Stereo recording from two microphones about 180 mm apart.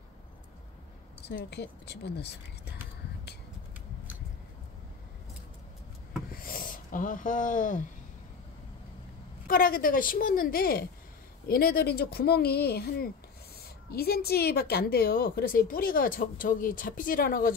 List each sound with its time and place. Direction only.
1.2 s speech: 65° left (ahead or behind)
6.3 s a sound: 55° left (ahead or behind)
9.5 s a woman's voice: 50° left (ahead or behind)